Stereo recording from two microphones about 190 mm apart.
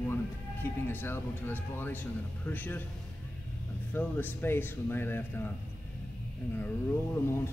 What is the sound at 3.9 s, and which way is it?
Speech, 10° left (ahead or behind).